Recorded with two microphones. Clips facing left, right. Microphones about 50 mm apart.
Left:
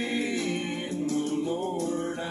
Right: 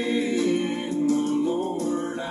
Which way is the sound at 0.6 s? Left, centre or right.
Right.